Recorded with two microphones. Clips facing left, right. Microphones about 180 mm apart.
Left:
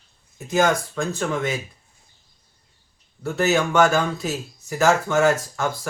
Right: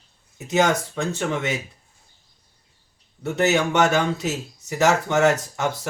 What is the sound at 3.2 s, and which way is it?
Speech, 20° right (ahead or behind).